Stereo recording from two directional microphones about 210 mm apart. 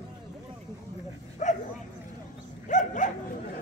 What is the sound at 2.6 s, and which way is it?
Dog, 35° left (ahead or behind).